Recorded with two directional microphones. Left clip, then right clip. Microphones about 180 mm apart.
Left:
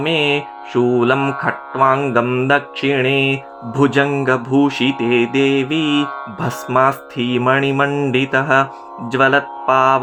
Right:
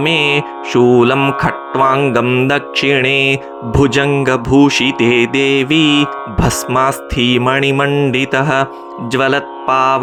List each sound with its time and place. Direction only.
0.0 s speech: 35° right (ahead or behind)
4.1 s mantra: 30° right (ahead or behind)
7.9 s mantra: 15° right (ahead or behind)